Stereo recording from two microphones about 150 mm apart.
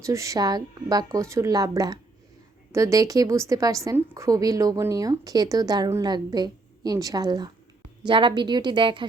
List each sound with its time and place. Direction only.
0.0 s a woman's voice: 20° right (ahead or behind)